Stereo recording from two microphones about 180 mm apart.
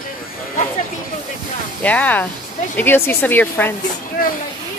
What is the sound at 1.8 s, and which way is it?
Speech, 10° left (ahead or behind).